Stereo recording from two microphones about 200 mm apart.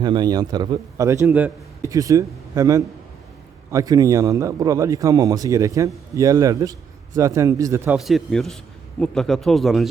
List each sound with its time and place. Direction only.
0.0 s a man's voice: 20° right (ahead or behind)
7.9 s speech: centre (ahead or behind)